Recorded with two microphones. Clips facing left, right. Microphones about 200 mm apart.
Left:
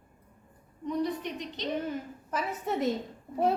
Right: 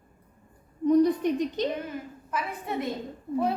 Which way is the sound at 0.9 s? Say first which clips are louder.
Right 10 dB; 45° right (ahead or behind).